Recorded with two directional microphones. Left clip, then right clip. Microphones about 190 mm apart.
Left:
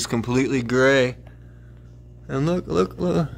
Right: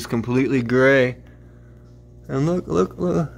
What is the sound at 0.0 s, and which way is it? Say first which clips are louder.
Speech: right 1 dB; centre (ahead or behind).